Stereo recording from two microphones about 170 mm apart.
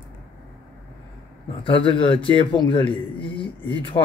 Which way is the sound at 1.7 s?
30° left (ahead or behind).